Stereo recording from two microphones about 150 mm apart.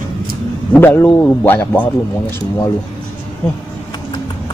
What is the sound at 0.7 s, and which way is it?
A man's voice, 15° left (ahead or behind).